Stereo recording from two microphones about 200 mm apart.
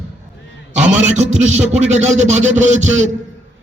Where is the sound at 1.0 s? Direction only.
35° right (ahead or behind).